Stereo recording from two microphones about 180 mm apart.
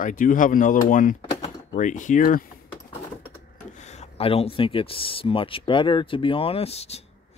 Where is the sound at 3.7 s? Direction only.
40° left (ahead or behind).